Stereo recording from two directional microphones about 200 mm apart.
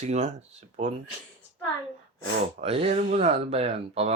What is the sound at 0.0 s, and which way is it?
Speech, 35° right (ahead or behind).